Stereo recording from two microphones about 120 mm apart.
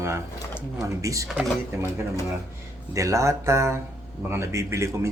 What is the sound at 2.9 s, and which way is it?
Speech, 25° right (ahead or behind).